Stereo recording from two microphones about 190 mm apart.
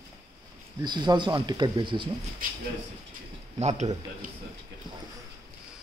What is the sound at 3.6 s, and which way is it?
Speech, 35° right (ahead or behind).